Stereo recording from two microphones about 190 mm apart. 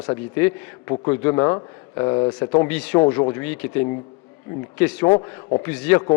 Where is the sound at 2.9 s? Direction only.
25° left (ahead or behind).